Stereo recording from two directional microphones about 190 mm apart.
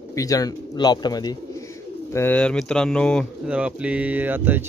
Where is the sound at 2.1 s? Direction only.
10° left (ahead or behind).